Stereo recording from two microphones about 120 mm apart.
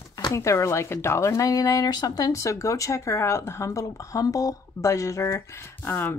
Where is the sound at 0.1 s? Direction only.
25° left (ahead or behind).